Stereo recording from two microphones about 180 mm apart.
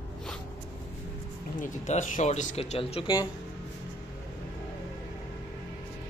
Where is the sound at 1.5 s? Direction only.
45° left (ahead or behind).